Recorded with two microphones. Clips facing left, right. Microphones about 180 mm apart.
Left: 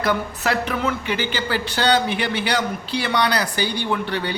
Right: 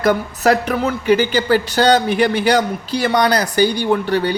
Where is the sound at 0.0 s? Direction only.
45° right (ahead or behind).